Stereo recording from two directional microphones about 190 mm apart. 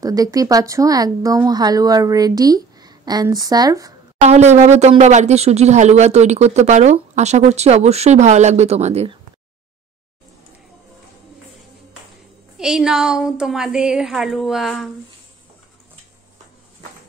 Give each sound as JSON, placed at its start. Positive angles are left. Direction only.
{"t": 0.0, "sound": "speech", "side_deg": -20}
{"t": 4.2, "sound": "speech", "side_deg": -35}
{"t": 12.5, "sound": "a woman's voice", "side_deg": -5}